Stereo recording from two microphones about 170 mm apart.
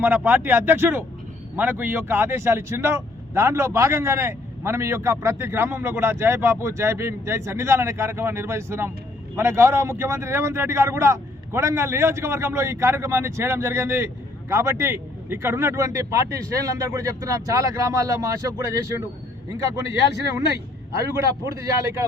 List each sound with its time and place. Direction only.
0.0 s speech: 10° right (ahead or behind)
20.9 s speech: 15° right (ahead or behind)